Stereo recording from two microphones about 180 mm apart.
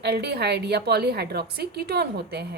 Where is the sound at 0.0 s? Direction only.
65° right (ahead or behind).